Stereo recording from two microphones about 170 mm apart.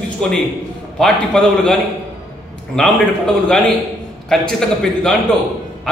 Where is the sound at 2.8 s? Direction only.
5° left (ahead or behind).